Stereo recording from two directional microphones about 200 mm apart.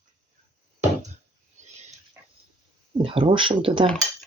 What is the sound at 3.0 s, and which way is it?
Speech, 25° right (ahead or behind).